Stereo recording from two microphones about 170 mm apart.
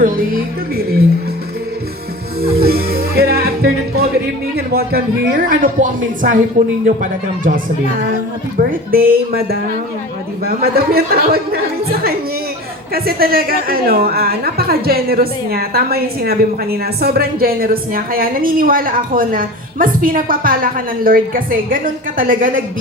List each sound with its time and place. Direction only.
0.0 s a woman's voice: 60° right (ahead or behind)
2.4 s music: 65° right (ahead or behind)
4.5 s a woman's voice: 65° right (ahead or behind)